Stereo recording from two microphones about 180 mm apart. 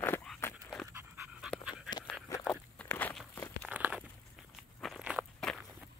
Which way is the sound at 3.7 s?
5° right (ahead or behind).